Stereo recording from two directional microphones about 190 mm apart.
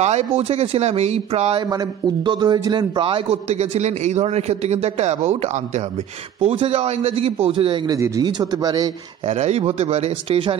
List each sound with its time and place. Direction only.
0.0 s a man's voice: 35° right (ahead or behind)
1.7 s a man's voice: 20° right (ahead or behind)
9.3 s a man's voice: 35° right (ahead or behind)